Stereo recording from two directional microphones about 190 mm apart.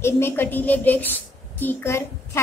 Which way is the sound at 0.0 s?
10° left (ahead or behind).